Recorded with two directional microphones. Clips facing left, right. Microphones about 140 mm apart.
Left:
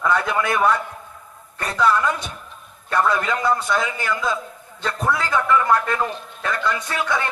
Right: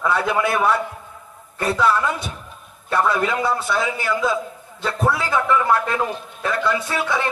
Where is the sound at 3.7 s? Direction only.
5° right (ahead or behind).